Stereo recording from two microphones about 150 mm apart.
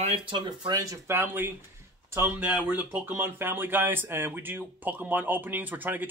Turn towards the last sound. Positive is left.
turn(degrees=-10)  # may be behind; listen again after turning